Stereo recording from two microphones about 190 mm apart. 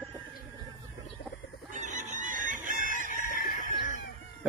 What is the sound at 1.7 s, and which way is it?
Chicken, 40° right (ahead or behind).